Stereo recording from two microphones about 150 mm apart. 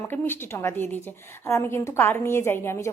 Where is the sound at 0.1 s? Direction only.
15° left (ahead or behind).